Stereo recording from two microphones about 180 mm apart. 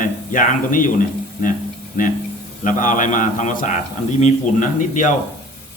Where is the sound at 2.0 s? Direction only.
50° left (ahead or behind).